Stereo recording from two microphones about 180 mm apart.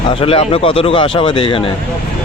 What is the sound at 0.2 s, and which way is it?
Speech, 30° left (ahead or behind).